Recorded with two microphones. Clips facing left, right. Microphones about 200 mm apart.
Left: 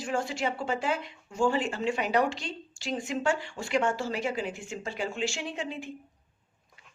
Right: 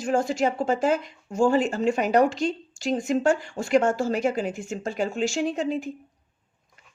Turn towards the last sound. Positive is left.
turn(degrees=-40)  # may be behind; listen again after turning